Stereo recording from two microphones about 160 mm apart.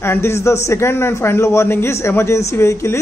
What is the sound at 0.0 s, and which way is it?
A man's voice, 15° left (ahead or behind).